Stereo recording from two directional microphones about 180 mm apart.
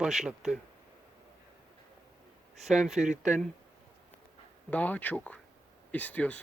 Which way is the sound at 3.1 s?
40° right (ahead or behind).